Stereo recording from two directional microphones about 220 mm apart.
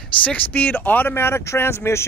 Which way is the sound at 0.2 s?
5° left (ahead or behind).